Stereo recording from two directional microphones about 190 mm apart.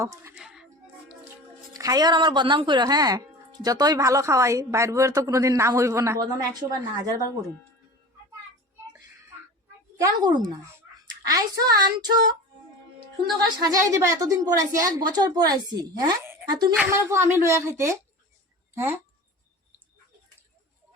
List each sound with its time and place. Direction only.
0.0 s a woman's voice: 15° right (ahead or behind)
0.3 s music: 5° right (ahead or behind)
1.7 s speech: 20° right (ahead or behind)
10.0 s speech: 20° right (ahead or behind)
13.6 s speech: 20° right (ahead or behind)
16.7 s a woman's voice: 10° right (ahead or behind)